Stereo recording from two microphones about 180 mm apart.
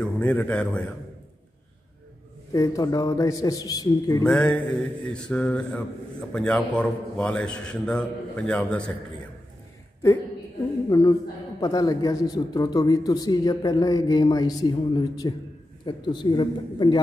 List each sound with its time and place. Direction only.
0.0 s speech: 10° left (ahead or behind)
2.5 s speech: 20° left (ahead or behind)
4.2 s a man's voice: 5° left (ahead or behind)
11.6 s speech: 20° left (ahead or behind)